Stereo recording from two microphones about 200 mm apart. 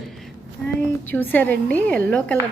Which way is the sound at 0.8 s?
10° left (ahead or behind).